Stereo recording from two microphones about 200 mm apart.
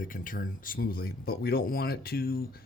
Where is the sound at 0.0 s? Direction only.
45° left (ahead or behind).